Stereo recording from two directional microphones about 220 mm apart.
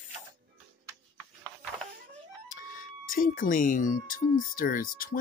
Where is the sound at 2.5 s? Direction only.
40° left (ahead or behind).